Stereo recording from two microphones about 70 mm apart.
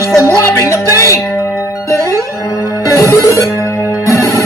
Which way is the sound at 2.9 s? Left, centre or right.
Left.